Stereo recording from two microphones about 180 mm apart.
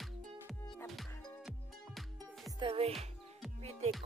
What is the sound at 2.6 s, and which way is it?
Speech, 30° right (ahead or behind).